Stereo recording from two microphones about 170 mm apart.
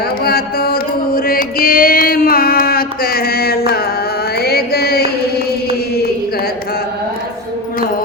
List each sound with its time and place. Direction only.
0.3 s mantra: 65° left (ahead or behind)
5.5 s chant: 65° left (ahead or behind)